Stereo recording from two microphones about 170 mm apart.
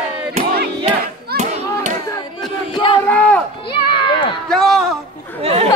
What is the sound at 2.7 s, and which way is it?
Crowd, 30° left (ahead or behind).